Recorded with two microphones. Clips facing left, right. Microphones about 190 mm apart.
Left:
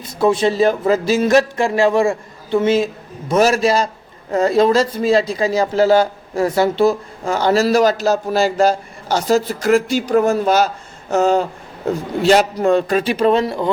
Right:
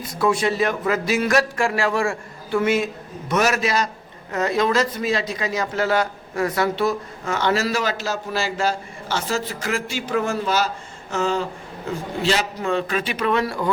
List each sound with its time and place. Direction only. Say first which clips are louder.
0.2 s a man's voice: left 6 dB; 25° left (ahead or behind)